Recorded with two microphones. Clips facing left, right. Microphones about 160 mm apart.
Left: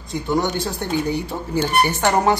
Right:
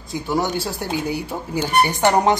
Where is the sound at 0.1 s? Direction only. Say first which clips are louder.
Left 1 dB; 5° right (ahead or behind).